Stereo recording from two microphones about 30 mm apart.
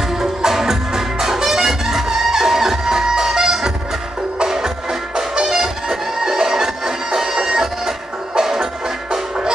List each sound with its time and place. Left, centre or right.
0.2 s music: centre